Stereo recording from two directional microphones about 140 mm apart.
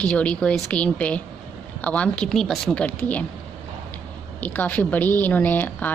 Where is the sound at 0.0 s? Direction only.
10° left (ahead or behind).